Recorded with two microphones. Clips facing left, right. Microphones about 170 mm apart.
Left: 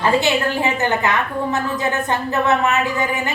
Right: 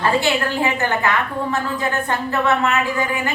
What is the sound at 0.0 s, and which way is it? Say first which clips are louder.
A woman's voice: left 2 dB; 20° left (ahead or behind).